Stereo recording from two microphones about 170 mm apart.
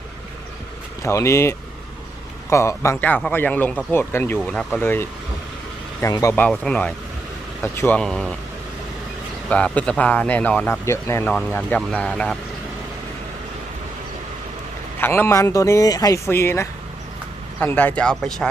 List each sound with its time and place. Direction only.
1.0 s speech: 15° left (ahead or behind)
6.4 s speech: 5° left (ahead or behind)
9.5 s speech: 5° left (ahead or behind)
15.0 s speech: 15° left (ahead or behind)